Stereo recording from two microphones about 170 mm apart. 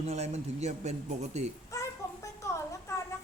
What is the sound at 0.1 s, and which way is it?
Speech, 40° right (ahead or behind).